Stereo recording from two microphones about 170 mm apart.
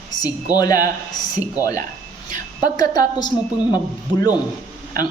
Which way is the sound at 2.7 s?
20° left (ahead or behind).